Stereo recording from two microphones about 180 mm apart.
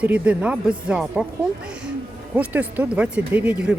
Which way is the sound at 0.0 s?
5° right (ahead or behind).